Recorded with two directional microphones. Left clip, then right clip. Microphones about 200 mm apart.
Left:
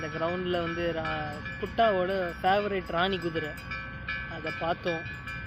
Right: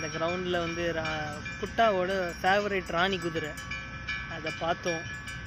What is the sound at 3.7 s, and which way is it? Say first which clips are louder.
Train: even; 20° right (ahead or behind).